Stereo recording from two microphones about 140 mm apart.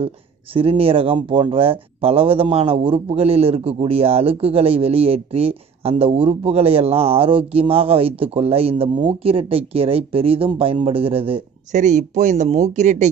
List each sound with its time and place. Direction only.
0.6 s speech: 40° right (ahead or behind)
11.7 s speech: 60° right (ahead or behind)